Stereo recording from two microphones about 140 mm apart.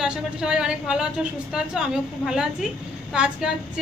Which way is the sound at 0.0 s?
5° right (ahead or behind).